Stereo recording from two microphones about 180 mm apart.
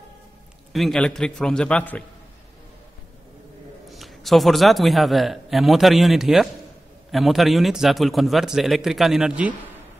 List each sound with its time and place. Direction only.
0.7 s a man's voice: centre (ahead or behind)
3.9 s a man's voice: centre (ahead or behind)